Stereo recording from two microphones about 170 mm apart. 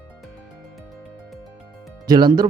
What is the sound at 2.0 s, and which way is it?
Speech, 25° right (ahead or behind).